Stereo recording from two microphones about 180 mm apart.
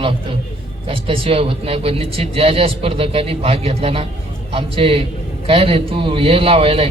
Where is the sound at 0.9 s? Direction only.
30° right (ahead or behind).